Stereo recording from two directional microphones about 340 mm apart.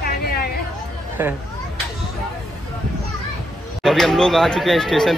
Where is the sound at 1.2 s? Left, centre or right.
Centre.